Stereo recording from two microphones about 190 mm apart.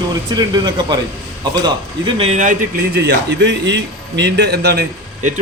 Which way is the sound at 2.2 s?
35° right (ahead or behind).